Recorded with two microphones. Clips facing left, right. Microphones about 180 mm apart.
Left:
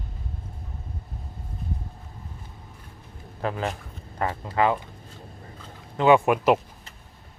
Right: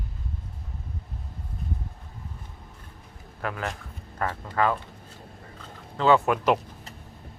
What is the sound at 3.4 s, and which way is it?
Speech, 25° left (ahead or behind).